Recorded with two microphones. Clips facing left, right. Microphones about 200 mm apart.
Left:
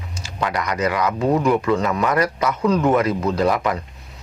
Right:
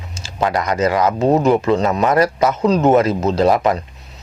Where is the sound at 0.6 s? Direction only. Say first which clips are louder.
Right 4 dB; 25° right (ahead or behind).